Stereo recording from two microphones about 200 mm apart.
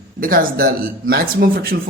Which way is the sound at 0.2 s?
45° right (ahead or behind).